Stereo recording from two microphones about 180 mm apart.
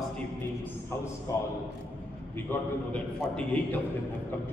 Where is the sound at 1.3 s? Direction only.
15° left (ahead or behind).